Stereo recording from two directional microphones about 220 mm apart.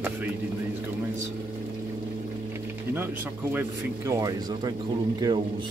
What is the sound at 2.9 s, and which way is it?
Speech, 10° right (ahead or behind).